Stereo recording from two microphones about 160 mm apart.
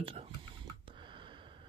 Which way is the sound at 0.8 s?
30° right (ahead or behind).